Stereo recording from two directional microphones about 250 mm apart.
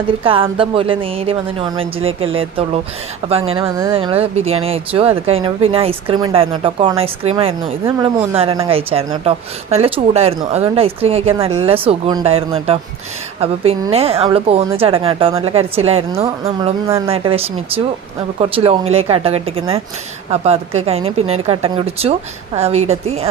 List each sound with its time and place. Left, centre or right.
0.5 s speech: right
16.2 s speech: centre
17.1 s speech: right